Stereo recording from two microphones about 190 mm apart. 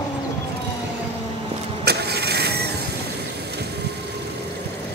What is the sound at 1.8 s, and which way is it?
Vehicle, 60° right (ahead or behind).